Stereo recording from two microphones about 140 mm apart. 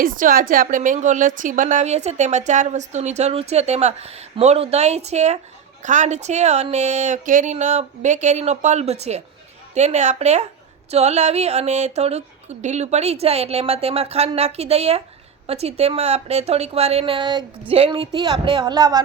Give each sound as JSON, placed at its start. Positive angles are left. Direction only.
{"t": 0.0, "sound": "a woman's voice", "side_deg": -85}